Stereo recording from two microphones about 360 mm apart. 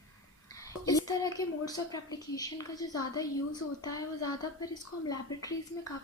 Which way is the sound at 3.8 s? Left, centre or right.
Left.